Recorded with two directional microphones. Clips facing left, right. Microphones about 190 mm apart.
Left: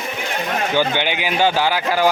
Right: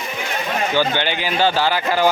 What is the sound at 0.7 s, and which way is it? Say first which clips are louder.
Speech: left 1 dB; 15° left (ahead or behind).